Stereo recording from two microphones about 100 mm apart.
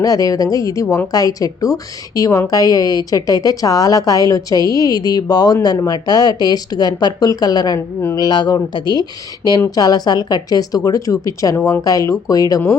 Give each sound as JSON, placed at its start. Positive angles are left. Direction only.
{"t": 0.0, "sound": "a woman's voice", "side_deg": 35}